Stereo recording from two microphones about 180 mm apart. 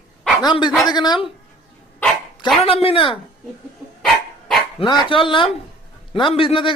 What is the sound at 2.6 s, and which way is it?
Speech, 30° left (ahead or behind).